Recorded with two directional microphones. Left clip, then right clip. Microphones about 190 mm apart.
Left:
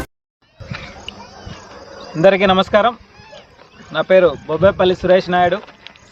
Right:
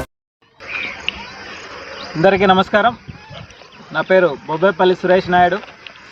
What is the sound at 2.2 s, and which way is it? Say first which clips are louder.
Speech: even; 25° left (ahead or behind).